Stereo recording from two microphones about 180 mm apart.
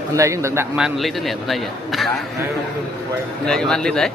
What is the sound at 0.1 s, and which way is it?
Speech, 15° right (ahead or behind).